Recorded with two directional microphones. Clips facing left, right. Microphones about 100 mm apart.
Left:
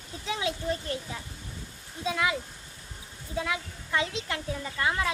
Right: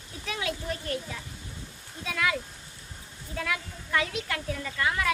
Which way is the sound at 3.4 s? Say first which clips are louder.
Left 1 dB; 20° left (ahead or behind).